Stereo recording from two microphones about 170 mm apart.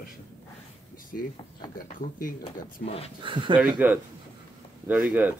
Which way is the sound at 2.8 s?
35° left (ahead or behind).